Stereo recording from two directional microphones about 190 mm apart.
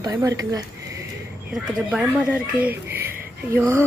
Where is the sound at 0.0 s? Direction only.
20° right (ahead or behind).